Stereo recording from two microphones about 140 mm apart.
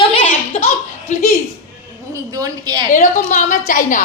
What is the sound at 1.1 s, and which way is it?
Speech, 60° left (ahead or behind).